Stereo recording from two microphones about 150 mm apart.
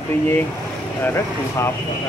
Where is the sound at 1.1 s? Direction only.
15° left (ahead or behind).